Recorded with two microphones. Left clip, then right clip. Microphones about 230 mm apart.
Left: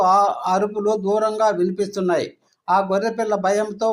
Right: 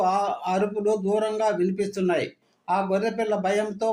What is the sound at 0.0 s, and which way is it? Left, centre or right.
Speech, centre.